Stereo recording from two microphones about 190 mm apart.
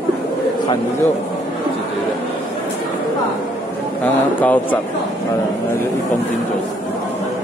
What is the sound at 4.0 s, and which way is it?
Speech, 10° left (ahead or behind).